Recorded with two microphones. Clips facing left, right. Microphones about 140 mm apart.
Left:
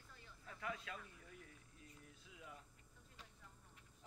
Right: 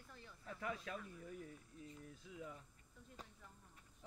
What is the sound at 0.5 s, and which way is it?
Speech, 35° right (ahead or behind).